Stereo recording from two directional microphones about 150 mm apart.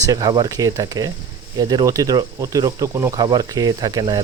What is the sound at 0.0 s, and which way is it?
Speech, 20° right (ahead or behind).